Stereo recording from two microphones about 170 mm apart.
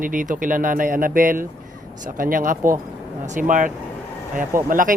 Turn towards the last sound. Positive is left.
turn(degrees=-55)  # may be behind; listen again after turning